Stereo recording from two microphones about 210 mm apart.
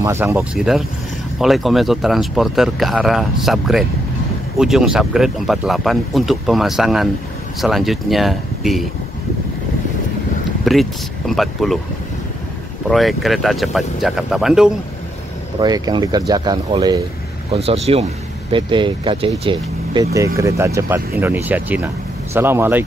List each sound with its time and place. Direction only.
0.0 s speech: 10° right (ahead or behind)
10.6 s speech: centre (ahead or behind)
12.9 s speech: centre (ahead or behind)
15.6 s speech: 20° right (ahead or behind)